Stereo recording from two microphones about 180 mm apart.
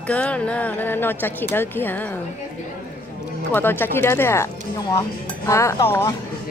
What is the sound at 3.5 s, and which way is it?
Speech, 10° left (ahead or behind).